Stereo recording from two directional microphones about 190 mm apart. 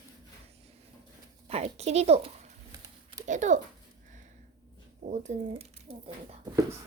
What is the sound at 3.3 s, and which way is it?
Speech, 40° right (ahead or behind).